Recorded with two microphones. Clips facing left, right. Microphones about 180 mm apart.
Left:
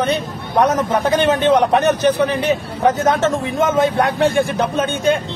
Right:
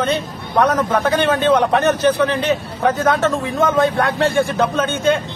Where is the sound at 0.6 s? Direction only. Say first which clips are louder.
Even; 20° left (ahead or behind).